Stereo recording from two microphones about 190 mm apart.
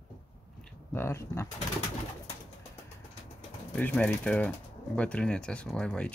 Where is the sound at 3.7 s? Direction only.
5° left (ahead or behind).